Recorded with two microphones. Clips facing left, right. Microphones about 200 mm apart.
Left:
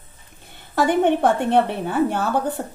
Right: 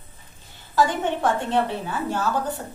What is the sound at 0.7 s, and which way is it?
A woman's voice, 60° left (ahead or behind).